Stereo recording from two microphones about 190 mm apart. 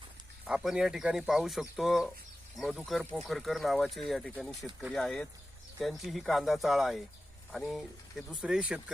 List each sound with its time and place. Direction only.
0.4 s speech: 5° right (ahead or behind)